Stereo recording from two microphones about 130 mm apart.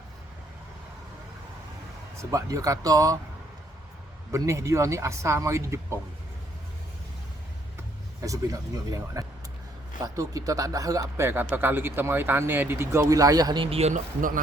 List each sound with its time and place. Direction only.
2.3 s speech: 25° right (ahead or behind)
4.3 s speech: 25° right (ahead or behind)
8.2 s speech: 25° right (ahead or behind); by 13.9 s 50° right (ahead or behind)
13.9 s speech: 90° right